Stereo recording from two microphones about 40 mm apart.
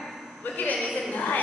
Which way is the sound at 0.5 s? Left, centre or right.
Left.